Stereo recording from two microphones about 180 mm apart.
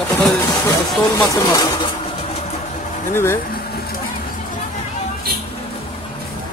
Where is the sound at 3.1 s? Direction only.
15° left (ahead or behind).